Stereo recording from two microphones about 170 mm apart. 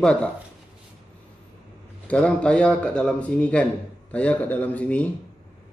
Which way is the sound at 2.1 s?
5° left (ahead or behind).